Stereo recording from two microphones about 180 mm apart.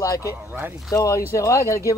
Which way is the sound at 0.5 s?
10° right (ahead or behind).